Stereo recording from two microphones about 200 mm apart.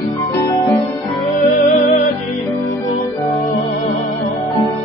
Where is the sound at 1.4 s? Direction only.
40° left (ahead or behind).